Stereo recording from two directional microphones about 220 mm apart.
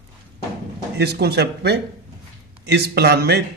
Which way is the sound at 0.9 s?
45° right (ahead or behind).